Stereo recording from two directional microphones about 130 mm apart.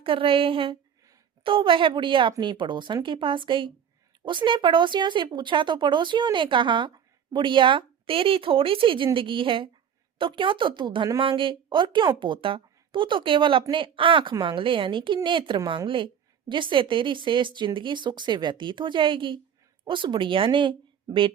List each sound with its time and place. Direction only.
0.0 s a woman's voice: 45° right (ahead or behind)